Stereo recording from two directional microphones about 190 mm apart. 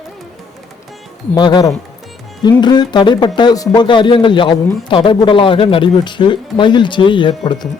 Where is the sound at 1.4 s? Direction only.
20° left (ahead or behind).